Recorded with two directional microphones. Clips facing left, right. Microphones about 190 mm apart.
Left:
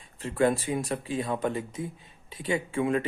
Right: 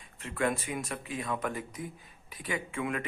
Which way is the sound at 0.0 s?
30° left (ahead or behind).